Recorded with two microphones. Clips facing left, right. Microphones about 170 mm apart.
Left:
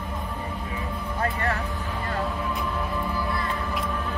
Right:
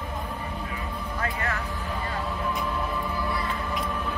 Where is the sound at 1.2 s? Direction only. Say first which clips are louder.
Left 4 dB; 35° left (ahead or behind).